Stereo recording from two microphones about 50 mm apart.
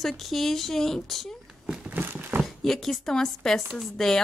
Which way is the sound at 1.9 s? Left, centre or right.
Right.